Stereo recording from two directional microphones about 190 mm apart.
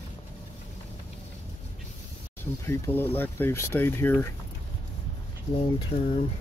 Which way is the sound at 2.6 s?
10° left (ahead or behind).